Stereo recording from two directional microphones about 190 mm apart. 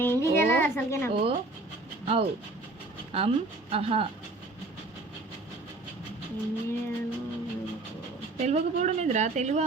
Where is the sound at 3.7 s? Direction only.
30° right (ahead or behind).